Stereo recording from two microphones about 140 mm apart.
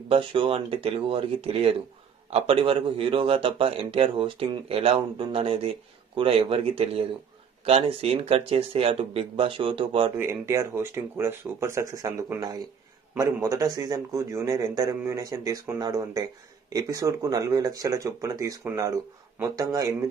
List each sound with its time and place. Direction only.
0.1 s a man's voice: 40° right (ahead or behind)
10.1 s speech: 20° right (ahead or behind)